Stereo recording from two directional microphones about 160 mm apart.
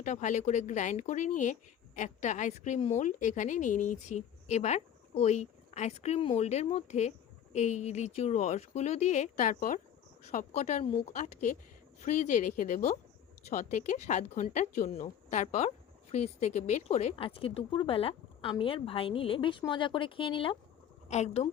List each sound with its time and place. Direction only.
0.0 s a woman's voice: 50° left (ahead or behind); by 20.6 s 30° left (ahead or behind)
21.1 s a woman's voice: 45° left (ahead or behind)